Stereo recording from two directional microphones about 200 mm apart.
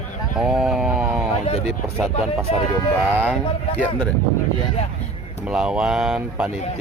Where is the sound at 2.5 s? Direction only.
30° left (ahead or behind).